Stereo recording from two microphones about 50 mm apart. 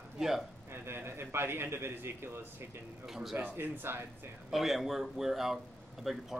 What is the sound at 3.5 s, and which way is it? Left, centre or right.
Speech, right.